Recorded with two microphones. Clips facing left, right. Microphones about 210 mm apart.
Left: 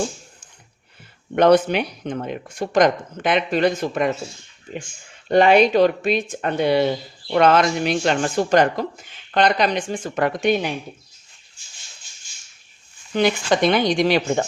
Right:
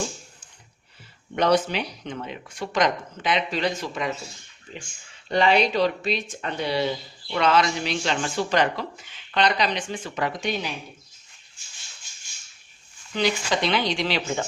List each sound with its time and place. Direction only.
1.4 s speech: 55° left (ahead or behind)
5.3 s speech: 50° left (ahead or behind)
13.1 s speech: 50° left (ahead or behind)